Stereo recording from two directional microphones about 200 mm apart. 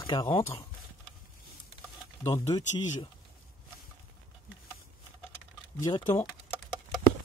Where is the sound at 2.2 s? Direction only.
15° left (ahead or behind).